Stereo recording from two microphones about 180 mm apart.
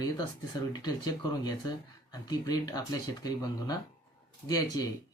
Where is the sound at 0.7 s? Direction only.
20° left (ahead or behind).